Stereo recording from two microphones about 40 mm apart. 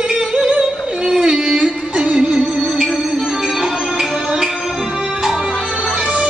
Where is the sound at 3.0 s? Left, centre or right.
Centre.